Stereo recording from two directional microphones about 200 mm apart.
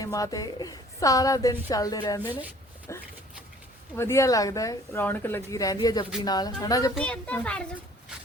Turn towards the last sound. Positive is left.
turn(degrees=5)  # may be behind; listen again after turning